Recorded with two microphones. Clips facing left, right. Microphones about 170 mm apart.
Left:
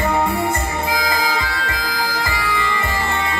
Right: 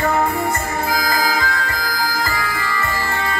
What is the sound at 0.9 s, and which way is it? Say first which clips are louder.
Music: right 1 dB; 45° right (ahead or behind).